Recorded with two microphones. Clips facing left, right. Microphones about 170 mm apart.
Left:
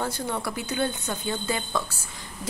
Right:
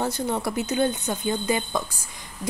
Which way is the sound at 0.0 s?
20° right (ahead or behind).